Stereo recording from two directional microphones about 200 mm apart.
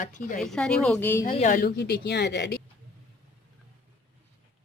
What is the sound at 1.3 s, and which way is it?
Speech, 35° left (ahead or behind).